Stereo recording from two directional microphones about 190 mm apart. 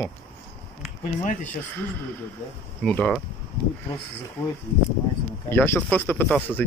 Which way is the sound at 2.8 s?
5° left (ahead or behind).